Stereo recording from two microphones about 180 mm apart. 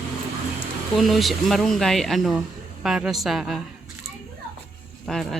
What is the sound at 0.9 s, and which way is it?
Speech, centre (ahead or behind).